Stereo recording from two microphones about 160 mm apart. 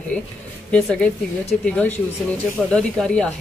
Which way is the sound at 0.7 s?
10° left (ahead or behind).